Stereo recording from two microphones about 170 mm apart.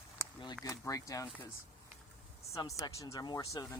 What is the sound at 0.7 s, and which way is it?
Speech, 20° left (ahead or behind).